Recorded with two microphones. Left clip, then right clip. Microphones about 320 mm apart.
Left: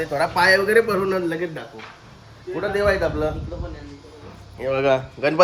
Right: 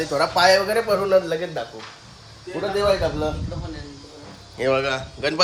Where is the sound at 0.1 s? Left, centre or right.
Centre.